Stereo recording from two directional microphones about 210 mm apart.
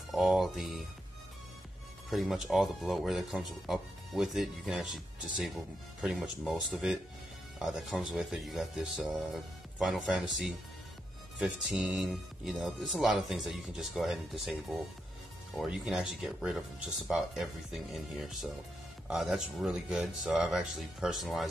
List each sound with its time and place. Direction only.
0.1 s speech: centre (ahead or behind)
2.0 s speech: centre (ahead or behind)
11.3 s speech: centre (ahead or behind)